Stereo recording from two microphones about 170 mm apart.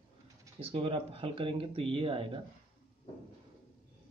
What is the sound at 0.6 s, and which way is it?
Speech, 35° right (ahead or behind).